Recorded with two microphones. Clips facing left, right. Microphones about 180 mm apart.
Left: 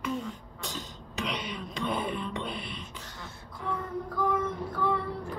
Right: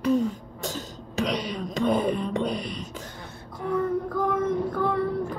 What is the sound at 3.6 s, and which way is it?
Child singing, 50° right (ahead or behind).